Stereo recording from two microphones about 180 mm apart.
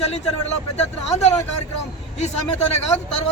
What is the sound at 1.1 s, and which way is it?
Speech, 40° left (ahead or behind).